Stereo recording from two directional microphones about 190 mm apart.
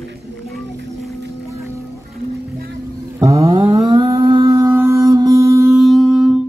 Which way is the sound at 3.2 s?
15° right (ahead or behind).